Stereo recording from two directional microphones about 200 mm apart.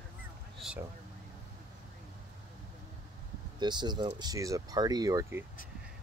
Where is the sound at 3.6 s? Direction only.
20° right (ahead or behind).